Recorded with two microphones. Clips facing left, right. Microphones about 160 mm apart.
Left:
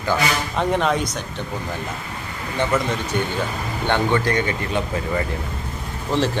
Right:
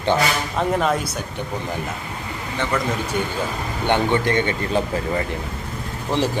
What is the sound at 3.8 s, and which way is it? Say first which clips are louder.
Speech: right 1 dB; 20° right (ahead or behind).